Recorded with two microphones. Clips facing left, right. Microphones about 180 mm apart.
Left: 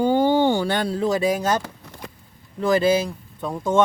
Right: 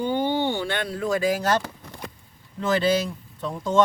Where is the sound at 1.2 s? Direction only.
15° left (ahead or behind).